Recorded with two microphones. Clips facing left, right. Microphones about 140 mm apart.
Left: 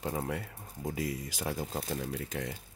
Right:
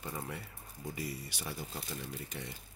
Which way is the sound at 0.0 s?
80° left.